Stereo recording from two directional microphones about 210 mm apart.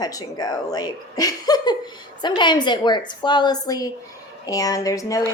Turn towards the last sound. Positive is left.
turn(degrees=15)  # may be behind; listen again after turning